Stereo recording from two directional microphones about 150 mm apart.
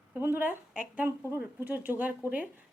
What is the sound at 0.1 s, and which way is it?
Speech, 10° right (ahead or behind).